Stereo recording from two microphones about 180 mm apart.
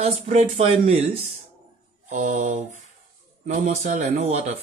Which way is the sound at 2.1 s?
45° right (ahead or behind).